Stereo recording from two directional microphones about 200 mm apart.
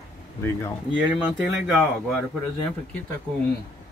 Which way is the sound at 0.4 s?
10° left (ahead or behind).